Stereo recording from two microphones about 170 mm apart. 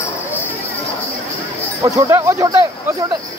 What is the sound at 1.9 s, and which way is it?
Speech, 15° right (ahead or behind).